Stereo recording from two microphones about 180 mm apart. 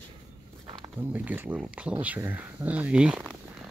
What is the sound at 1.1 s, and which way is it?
Speech, 10° right (ahead or behind).